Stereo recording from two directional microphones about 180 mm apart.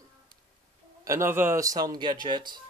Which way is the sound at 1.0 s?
15° right (ahead or behind).